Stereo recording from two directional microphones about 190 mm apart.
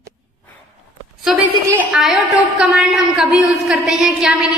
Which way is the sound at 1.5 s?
15° right (ahead or behind).